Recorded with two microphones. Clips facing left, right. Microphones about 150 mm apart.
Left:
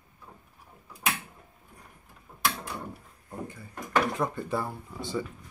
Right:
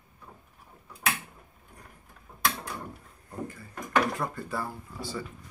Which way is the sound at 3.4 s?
20° left (ahead or behind).